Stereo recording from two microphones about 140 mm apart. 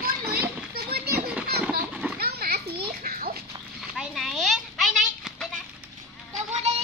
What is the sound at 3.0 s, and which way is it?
Dog, 90° right.